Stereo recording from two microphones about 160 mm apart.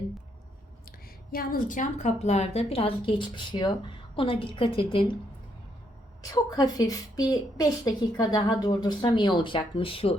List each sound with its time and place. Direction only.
0.9 s a woman's voice: 65° left (ahead or behind); by 5.0 s 35° left (ahead or behind)
6.3 s a woman's voice: 25° left (ahead or behind)